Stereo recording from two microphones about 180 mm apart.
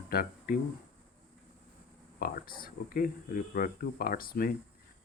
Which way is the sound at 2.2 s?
55° left (ahead or behind).